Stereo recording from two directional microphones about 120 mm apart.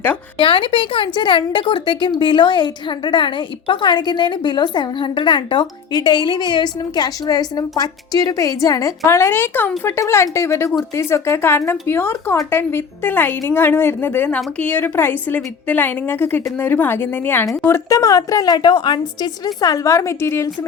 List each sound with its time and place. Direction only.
0.3 s a woman's voice: 45° left (ahead or behind); by 20.5 s 20° left (ahead or behind)